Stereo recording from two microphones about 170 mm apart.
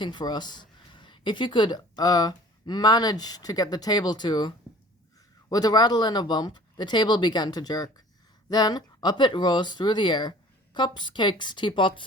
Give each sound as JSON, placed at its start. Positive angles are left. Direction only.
{"t": 0.0, "sound": "speech", "side_deg": 25}